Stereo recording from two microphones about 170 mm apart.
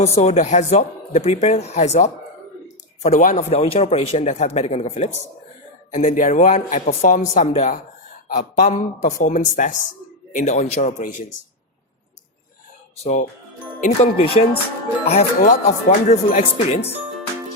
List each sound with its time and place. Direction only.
0.0 s speech: 40° left (ahead or behind)
3.5 s speech: 35° left (ahead or behind)
13.0 s speech: 40° left (ahead or behind)